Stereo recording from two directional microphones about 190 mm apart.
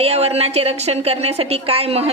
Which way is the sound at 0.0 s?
30° right (ahead or behind).